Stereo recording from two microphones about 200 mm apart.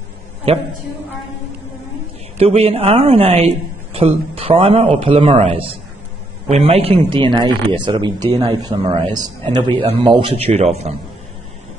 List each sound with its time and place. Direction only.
0.5 s speech: 30° right (ahead or behind)
2.3 s speech: 30° right (ahead or behind)